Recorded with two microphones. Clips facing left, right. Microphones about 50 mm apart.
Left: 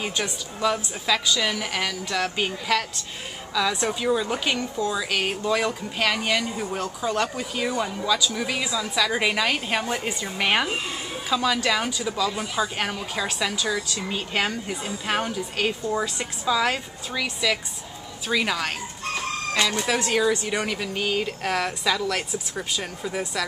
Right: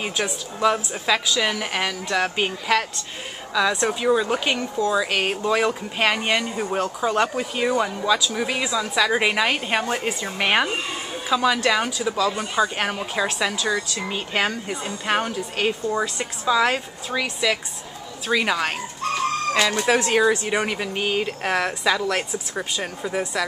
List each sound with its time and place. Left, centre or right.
0.0 s speech: centre
3.8 s speech: centre
12.9 s speech: centre
14.0 s speech: centre
19.8 s speech: centre